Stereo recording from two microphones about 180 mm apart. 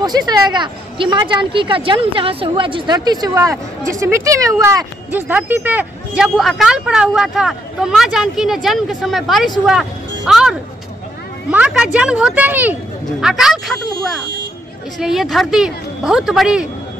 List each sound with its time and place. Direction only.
0.0 s speech: 20° right (ahead or behind); by 10.5 s 5° right (ahead or behind)
11.5 s speech: 5° right (ahead or behind)